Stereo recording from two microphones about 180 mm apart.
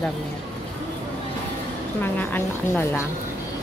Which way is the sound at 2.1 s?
10° left (ahead or behind).